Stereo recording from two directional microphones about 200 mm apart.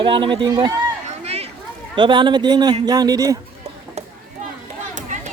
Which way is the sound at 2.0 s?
25° right (ahead or behind).